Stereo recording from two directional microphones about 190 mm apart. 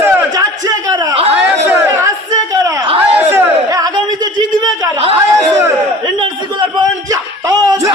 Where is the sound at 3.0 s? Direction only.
10° right (ahead or behind).